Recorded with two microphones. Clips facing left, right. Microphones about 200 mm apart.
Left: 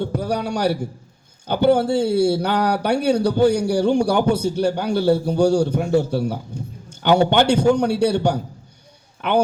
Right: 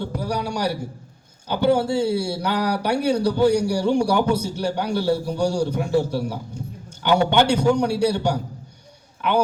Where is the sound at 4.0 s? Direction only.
25° left (ahead or behind).